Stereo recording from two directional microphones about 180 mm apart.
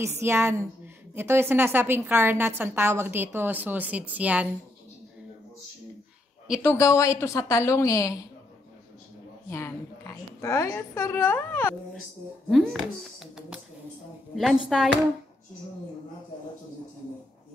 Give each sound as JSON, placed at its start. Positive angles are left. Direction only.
{"t": 0.2, "sound": "a woman's voice", "side_deg": -15}
{"t": 6.6, "sound": "a woman's voice", "side_deg": 15}
{"t": 9.5, "sound": "a woman's voice", "side_deg": 15}
{"t": 12.4, "sound": "speech", "side_deg": 0}